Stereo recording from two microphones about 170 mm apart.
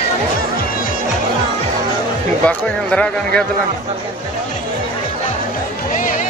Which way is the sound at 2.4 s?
10° left (ahead or behind).